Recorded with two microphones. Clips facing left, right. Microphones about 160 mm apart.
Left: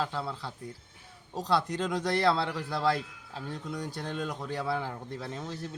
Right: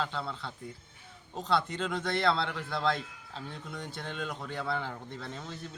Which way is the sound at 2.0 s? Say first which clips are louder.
Left 2 dB; 10° left (ahead or behind).